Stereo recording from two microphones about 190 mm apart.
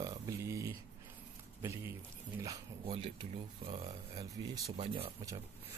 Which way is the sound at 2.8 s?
30° right (ahead or behind).